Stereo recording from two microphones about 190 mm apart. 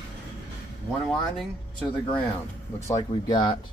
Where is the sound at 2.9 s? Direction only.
25° left (ahead or behind).